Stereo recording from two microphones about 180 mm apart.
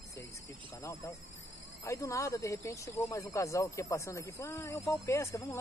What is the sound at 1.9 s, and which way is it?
Speech, 15° left (ahead or behind).